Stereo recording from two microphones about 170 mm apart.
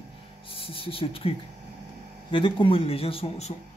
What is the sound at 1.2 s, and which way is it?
A man's voice, 35° left (ahead or behind).